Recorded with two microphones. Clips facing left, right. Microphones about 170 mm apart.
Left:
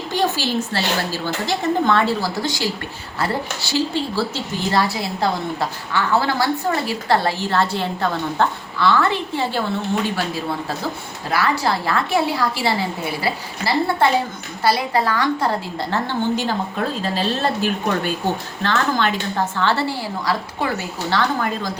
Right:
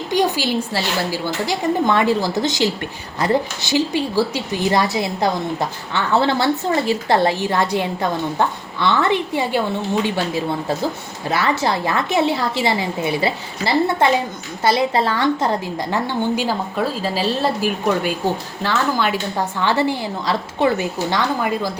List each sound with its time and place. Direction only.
0.1 s a woman's voice: 15° right (ahead or behind)
11.3 s a woman's voice: 20° right (ahead or behind)
15.9 s a woman's voice: 10° right (ahead or behind)